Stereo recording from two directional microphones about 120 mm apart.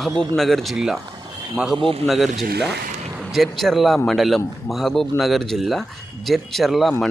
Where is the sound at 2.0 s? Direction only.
Centre (ahead or behind).